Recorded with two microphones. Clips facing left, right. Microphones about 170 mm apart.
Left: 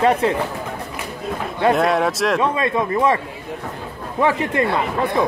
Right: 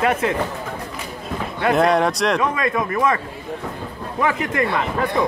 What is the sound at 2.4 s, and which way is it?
Speech, 30° left (ahead or behind).